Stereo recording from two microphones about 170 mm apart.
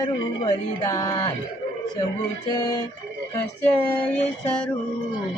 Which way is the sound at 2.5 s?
20° left (ahead or behind).